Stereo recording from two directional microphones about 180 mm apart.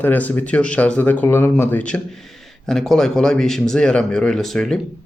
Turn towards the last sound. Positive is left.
turn(degrees=0)  # may be behind; listen again after turning